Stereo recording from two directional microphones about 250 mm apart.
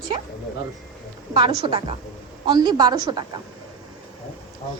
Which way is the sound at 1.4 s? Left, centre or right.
Centre.